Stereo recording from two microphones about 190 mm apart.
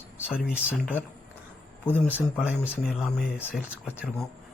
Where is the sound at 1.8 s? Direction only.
10° left (ahead or behind).